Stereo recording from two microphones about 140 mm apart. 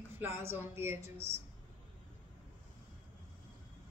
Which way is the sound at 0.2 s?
15° right (ahead or behind).